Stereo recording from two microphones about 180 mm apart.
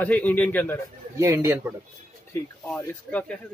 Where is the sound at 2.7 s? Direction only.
10° left (ahead or behind).